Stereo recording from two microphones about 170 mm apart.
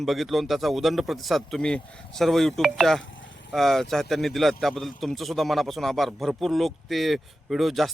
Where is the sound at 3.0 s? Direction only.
90° left.